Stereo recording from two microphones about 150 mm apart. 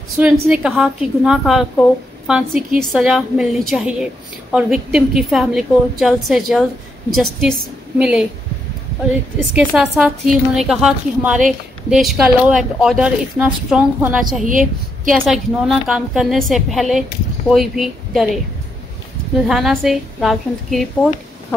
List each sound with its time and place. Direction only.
0.2 s a woman's voice: 5° right (ahead or behind)
8.0 s a woman's voice: 5° right (ahead or behind)
9.5 s a woman's voice: 10° right (ahead or behind)
14.4 s a woman's voice: 60° right (ahead or behind)
15.0 s a woman's voice: centre (ahead or behind)
19.4 s a woman's voice: centre (ahead or behind)